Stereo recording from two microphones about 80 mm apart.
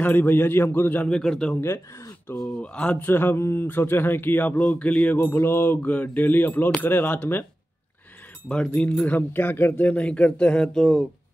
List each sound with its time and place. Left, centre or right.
0.0 s speech: left
1.1 s speech: centre
1.6 s speech: left
2.3 s speech: centre
5.2 s speech: left
8.5 s speech: centre